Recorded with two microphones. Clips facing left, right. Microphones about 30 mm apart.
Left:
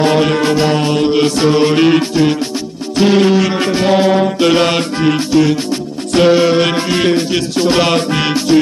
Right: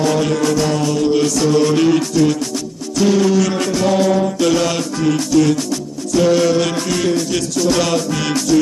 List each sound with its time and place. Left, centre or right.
0.0 s music: left